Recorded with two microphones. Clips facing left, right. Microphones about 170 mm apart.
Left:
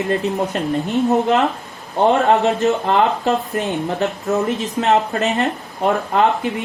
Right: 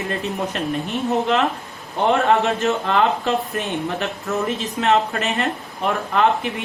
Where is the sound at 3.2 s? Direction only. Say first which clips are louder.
Left 3 dB; 20° left (ahead or behind).